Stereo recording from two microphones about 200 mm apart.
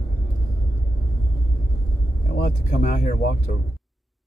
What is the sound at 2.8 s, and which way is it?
Speech, 40° left (ahead or behind).